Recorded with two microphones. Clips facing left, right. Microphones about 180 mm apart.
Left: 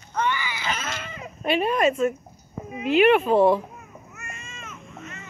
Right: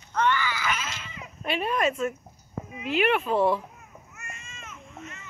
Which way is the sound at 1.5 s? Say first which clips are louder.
Left 5 dB; 5° left (ahead or behind).